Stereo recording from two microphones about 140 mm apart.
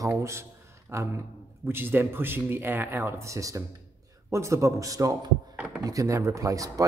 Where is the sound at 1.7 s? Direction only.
15° right (ahead or behind).